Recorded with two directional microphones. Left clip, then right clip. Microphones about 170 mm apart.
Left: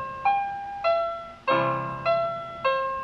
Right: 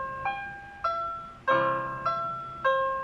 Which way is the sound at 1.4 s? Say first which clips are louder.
Left 1 dB; 20° left (ahead or behind).